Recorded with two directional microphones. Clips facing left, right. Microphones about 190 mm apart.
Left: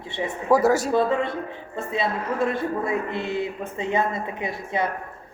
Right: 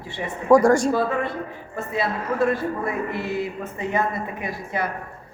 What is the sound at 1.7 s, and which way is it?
A woman's voice, 20° left (ahead or behind).